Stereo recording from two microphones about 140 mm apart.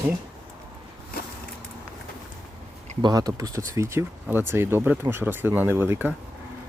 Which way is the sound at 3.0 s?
30° right (ahead or behind).